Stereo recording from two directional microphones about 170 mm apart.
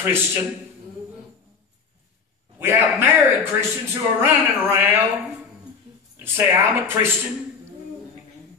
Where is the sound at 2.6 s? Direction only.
15° right (ahead or behind).